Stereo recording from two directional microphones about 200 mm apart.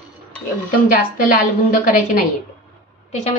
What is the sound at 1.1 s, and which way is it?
A woman's voice, 45° left (ahead or behind).